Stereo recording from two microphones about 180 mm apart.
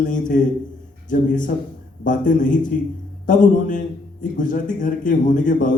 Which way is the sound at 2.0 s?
45° left (ahead or behind).